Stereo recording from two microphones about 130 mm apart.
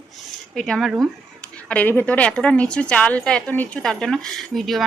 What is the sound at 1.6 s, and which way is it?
A woman's voice, 10° left (ahead or behind).